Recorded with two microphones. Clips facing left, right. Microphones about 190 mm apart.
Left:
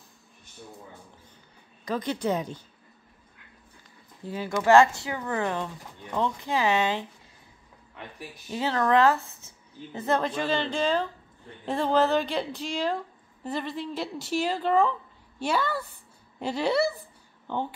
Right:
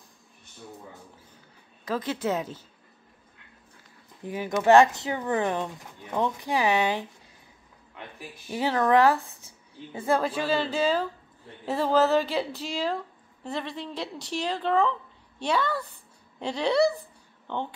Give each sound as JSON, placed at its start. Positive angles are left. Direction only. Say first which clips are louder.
{"t": 1.9, "sound": "a woman's voice", "louder": "even", "side_deg": -5}
{"t": 4.2, "sound": "speech", "louder": "right 1 dB", "side_deg": -15}
{"t": 8.5, "sound": "a woman's voice", "louder": "right 1 dB", "side_deg": -15}